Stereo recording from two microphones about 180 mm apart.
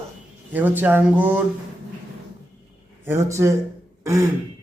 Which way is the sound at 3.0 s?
15° right (ahead or behind).